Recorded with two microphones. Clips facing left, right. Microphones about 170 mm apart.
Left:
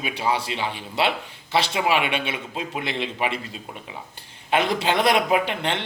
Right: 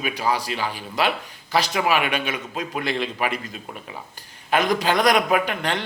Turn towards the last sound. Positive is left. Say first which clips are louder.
# even
turn(degrees=25)  # may be behind; listen again after turning